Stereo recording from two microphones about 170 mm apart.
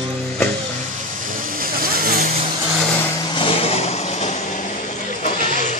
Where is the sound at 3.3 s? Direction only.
30° left (ahead or behind).